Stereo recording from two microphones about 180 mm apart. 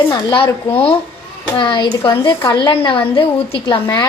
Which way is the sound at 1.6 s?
25° left (ahead or behind).